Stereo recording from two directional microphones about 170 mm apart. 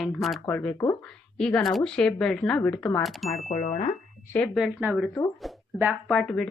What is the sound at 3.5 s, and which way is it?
Music, 40° left (ahead or behind).